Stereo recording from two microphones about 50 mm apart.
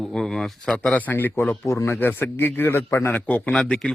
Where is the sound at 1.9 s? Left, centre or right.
Left.